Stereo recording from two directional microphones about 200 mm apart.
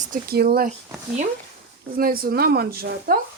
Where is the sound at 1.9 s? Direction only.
45° right (ahead or behind).